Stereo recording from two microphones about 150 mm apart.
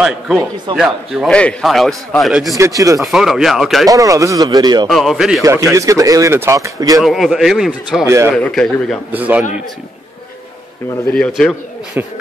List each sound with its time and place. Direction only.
0.0 s a man's voice: 5° right (ahead or behind)
2.5 s speech: 20° right (ahead or behind)
3.0 s a man's voice: centre (ahead or behind)
3.9 s speech: 20° right (ahead or behind)
4.8 s a man's voice: centre (ahead or behind)
5.4 s speech: 20° right (ahead or behind)
7.0 s a man's voice: centre (ahead or behind)
9.1 s a man's voice: 10° right (ahead or behind)
11.1 s a man's voice: centre (ahead or behind)